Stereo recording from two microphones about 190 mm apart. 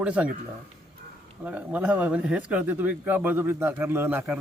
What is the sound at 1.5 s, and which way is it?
A man's voice, 10° right (ahead or behind).